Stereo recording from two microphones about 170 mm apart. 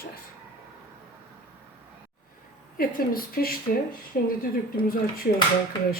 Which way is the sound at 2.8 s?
60° left (ahead or behind).